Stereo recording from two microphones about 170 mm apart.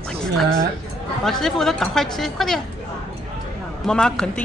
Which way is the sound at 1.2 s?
Centre (ahead or behind).